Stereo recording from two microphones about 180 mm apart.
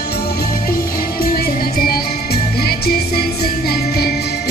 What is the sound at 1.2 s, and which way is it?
Music, 55° left (ahead or behind).